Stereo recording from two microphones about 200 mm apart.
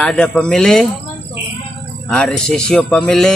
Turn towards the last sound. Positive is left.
turn(degrees=5)  # may be behind; listen again after turning